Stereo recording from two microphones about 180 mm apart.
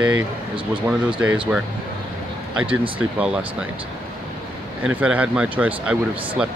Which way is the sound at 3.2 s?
5° right (ahead or behind).